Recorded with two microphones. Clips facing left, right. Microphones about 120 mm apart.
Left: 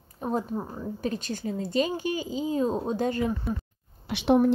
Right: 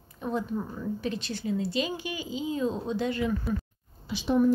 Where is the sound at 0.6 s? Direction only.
30° left (ahead or behind).